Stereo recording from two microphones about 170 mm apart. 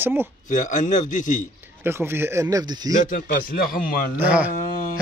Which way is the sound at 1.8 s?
15° right (ahead or behind).